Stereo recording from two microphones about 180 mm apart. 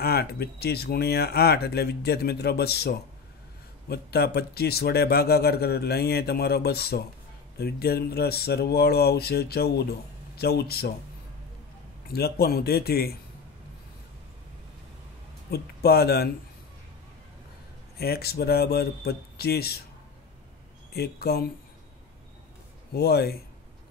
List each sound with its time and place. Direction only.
0.0 s speech: 60° left (ahead or behind)
12.1 s speech: 60° left (ahead or behind)
15.5 s speech: 60° left (ahead or behind)
17.9 s speech: 60° left (ahead or behind)
20.9 s speech: 60° left (ahead or behind)
22.9 s speech: 60° left (ahead or behind)